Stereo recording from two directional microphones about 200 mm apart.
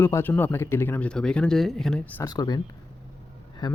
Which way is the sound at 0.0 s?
10° left (ahead or behind).